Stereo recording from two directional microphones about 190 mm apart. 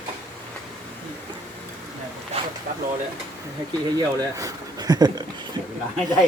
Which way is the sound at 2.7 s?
50° right (ahead or behind).